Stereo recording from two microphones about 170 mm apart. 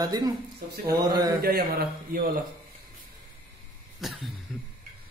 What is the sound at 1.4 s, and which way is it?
Speech, 65° right (ahead or behind).